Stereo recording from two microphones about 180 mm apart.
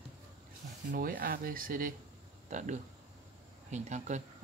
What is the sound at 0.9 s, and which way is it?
Speech, 55° right (ahead or behind).